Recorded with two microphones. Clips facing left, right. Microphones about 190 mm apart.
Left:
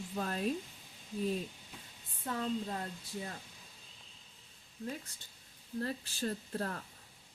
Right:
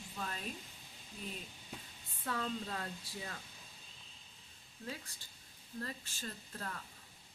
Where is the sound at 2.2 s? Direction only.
20° left (ahead or behind).